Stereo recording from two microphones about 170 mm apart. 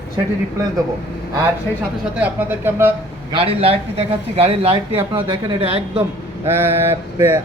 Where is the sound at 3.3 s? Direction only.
35° right (ahead or behind).